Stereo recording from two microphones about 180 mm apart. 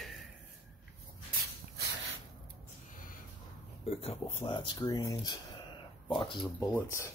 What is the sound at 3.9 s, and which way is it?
Speech, 35° left (ahead or behind).